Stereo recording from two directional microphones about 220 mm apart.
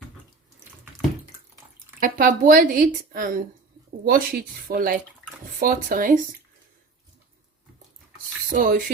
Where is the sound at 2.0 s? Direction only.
35° right (ahead or behind).